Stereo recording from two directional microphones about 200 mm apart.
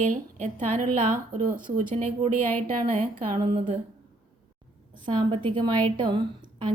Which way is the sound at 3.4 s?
30° right (ahead or behind).